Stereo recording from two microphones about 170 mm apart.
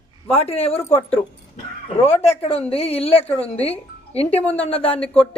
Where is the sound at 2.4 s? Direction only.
35° left (ahead or behind).